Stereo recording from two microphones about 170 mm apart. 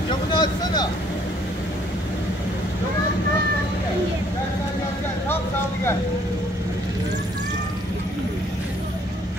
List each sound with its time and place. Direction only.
0.3 s speech: 25° left (ahead or behind)